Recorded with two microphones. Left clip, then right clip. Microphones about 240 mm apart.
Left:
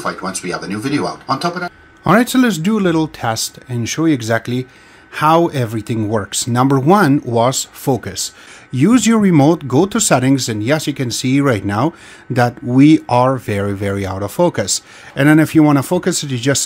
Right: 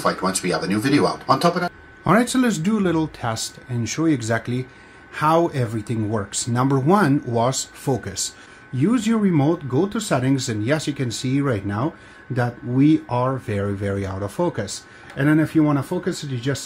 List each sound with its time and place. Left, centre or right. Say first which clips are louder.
0.0 s speech: even; centre
2.0 s speech: left 6 dB; left